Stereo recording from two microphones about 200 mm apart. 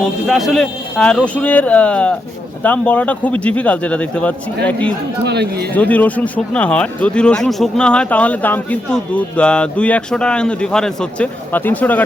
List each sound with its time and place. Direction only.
0.0 s a man's voice: centre (ahead or behind)
5.2 s speech: 55° right (ahead or behind)
5.7 s speech: 10° left (ahead or behind)